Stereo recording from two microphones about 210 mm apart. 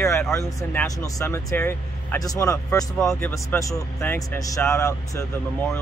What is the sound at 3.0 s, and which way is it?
Speech, 5° left (ahead or behind).